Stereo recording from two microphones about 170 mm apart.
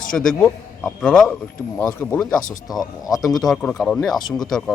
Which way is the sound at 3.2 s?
Centre (ahead or behind).